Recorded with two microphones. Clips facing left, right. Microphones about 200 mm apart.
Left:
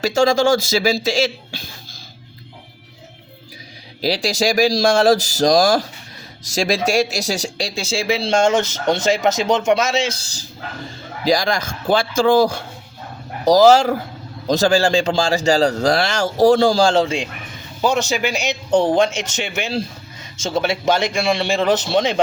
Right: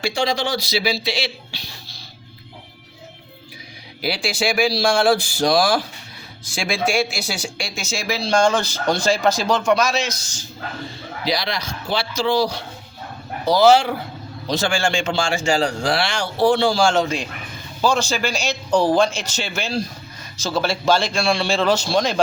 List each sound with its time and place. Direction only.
0.0 s speech: 45° left (ahead or behind)
4.0 s a man's voice: 40° left (ahead or behind)
11.3 s a man's voice: 45° left (ahead or behind); by 22.2 s 20° left (ahead or behind)